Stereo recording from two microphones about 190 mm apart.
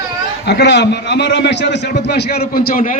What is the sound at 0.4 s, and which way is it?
A man's voice, 65° left (ahead or behind).